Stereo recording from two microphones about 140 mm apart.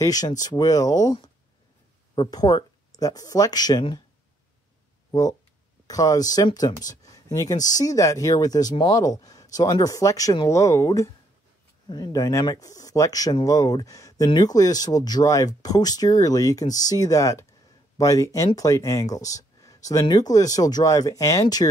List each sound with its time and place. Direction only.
0.0 s speech: 25° left (ahead or behind)
5.1 s speech: 30° left (ahead or behind)